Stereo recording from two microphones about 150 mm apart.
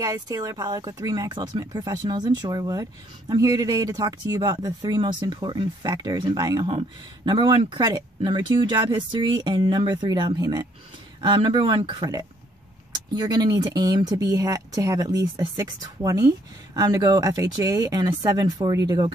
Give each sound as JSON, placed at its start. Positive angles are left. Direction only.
{"t": 0.0, "sound": "speech", "side_deg": -25}